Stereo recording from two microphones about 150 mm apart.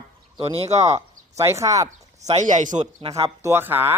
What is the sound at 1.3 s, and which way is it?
Speech, 20° right (ahead or behind).